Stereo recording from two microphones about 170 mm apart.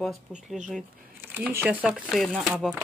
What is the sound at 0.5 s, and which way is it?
Speech, centre (ahead or behind).